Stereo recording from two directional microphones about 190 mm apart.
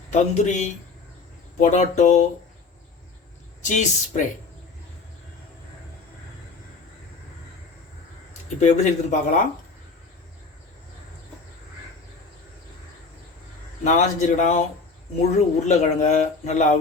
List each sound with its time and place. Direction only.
0.1 s speech: 35° left (ahead or behind)
3.6 s speech: 40° left (ahead or behind)
8.3 s speech: 40° left (ahead or behind)
13.8 s speech: 40° left (ahead or behind)